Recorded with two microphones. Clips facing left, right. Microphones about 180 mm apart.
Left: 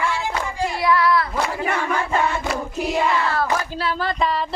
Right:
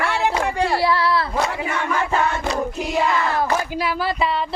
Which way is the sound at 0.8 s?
30° right (ahead or behind).